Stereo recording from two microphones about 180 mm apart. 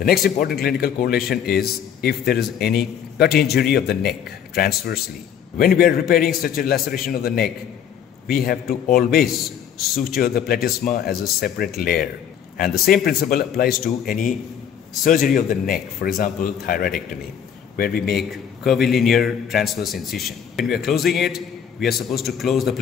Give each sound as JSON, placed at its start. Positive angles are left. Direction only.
{"t": 0.0, "sound": "a man's voice", "side_deg": 55}
{"t": 18.3, "sound": "a man's voice", "side_deg": 0}